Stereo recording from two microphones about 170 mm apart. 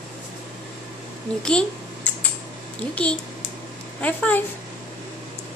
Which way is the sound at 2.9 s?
5° left (ahead or behind).